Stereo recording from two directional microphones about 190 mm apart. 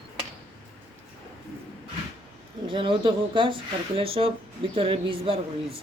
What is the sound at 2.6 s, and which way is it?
Speech, 25° right (ahead or behind).